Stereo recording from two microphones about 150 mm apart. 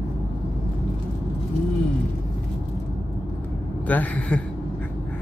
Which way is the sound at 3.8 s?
10° left (ahead or behind).